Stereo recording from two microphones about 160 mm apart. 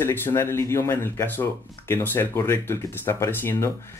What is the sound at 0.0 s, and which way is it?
Speech, 15° left (ahead or behind).